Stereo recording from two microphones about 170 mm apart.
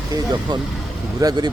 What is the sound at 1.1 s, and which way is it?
Speech, 25° right (ahead or behind).